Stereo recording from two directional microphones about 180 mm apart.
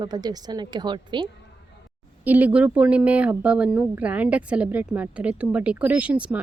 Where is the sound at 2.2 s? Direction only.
10° right (ahead or behind).